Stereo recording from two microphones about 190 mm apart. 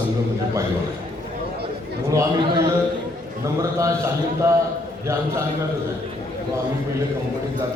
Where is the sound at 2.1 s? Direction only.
15° right (ahead or behind).